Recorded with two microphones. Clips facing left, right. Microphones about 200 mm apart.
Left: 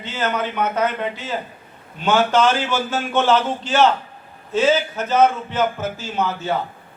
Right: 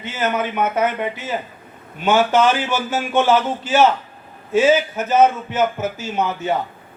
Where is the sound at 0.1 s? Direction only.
10° right (ahead or behind).